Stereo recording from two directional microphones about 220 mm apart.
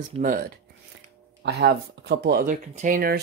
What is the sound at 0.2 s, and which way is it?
Speech, 40° right (ahead or behind).